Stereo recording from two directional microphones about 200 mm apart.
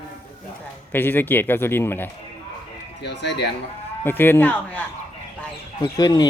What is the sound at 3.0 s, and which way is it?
Speech, 60° left (ahead or behind).